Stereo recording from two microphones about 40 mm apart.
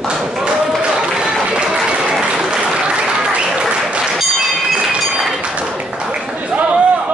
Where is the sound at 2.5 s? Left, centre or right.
Right.